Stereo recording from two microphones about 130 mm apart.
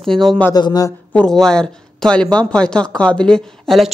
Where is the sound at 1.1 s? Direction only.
5° left (ahead or behind).